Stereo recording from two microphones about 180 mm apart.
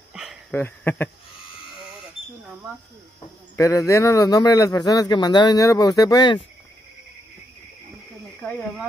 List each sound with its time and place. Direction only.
0.1 s a sound: 5° right (ahead or behind)
0.5 s speech: 10° left (ahead or behind)
3.5 s a man's voice: 15° left (ahead or behind)
8.4 s speech: 10° left (ahead or behind)